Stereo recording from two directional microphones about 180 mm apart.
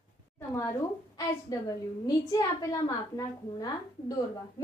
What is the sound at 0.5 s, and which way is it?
A woman's voice, 15° left (ahead or behind).